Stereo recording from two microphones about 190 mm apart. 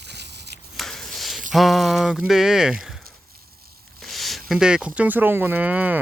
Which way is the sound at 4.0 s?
Centre (ahead or behind).